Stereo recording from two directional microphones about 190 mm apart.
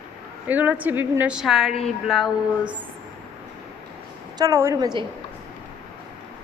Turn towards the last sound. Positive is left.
turn(degrees=-20)  # may be behind; listen again after turning